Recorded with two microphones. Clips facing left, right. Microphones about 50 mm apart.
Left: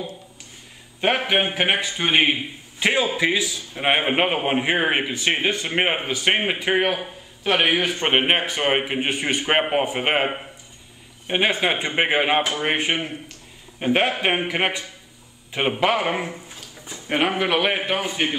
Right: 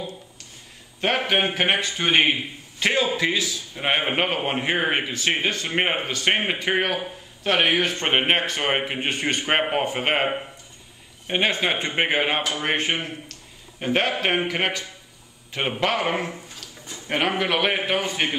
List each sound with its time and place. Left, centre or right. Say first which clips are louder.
1.0 s a man's voice: left 1 dB; centre